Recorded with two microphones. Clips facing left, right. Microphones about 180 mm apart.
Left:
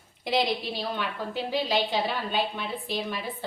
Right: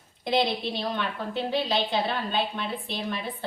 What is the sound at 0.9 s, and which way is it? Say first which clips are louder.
A woman's voice: right 1 dB; 10° left (ahead or behind).